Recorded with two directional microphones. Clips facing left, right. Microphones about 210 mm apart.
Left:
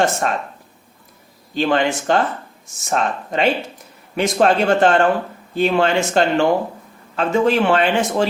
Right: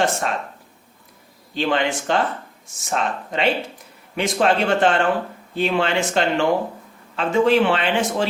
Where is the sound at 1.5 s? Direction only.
45° left (ahead or behind).